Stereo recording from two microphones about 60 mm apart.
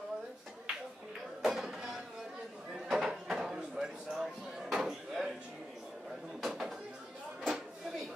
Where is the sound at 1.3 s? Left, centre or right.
Centre.